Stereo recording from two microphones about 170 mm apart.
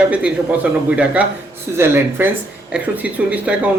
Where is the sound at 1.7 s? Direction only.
15° right (ahead or behind).